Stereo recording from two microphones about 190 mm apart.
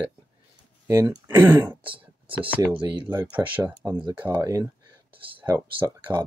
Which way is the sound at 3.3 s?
10° right (ahead or behind).